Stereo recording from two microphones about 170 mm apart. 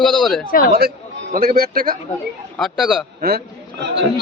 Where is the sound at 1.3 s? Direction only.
55° right (ahead or behind).